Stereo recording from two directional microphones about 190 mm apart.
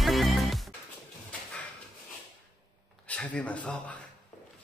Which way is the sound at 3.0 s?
5° left (ahead or behind).